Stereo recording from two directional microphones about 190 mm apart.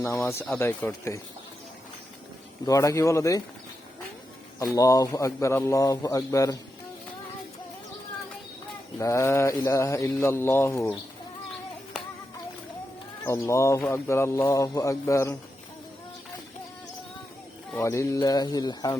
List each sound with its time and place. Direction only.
0.0 s speech: 15° left (ahead or behind)
2.6 s speech: 15° left (ahead or behind)
4.6 s speech: 20° left (ahead or behind)
9.0 s speech: 15° left (ahead or behind)
13.2 s speech: 15° left (ahead or behind)
17.7 s speech: 15° left (ahead or behind)